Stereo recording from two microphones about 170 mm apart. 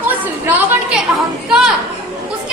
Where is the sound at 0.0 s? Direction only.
10° right (ahead or behind).